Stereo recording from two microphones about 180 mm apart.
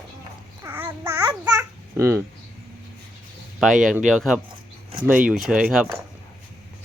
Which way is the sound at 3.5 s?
Centre (ahead or behind).